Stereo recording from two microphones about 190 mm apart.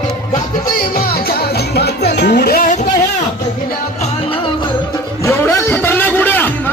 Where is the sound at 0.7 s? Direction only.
50° left (ahead or behind).